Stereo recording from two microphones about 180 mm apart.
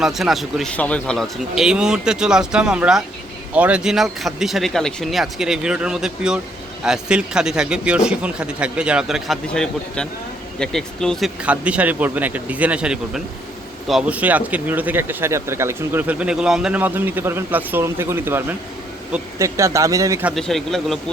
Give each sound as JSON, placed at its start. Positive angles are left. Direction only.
{"t": 0.0, "sound": "a man's voice", "side_deg": 0}
{"t": 20.3, "sound": "a man's voice", "side_deg": 0}